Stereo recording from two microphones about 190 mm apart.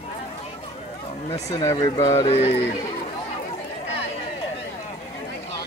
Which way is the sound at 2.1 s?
30° left (ahead or behind).